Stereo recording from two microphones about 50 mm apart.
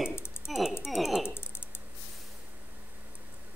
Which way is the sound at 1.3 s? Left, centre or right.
Left.